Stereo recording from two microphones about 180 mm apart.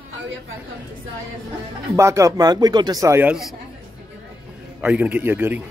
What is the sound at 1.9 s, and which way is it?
Speech, 15° right (ahead or behind).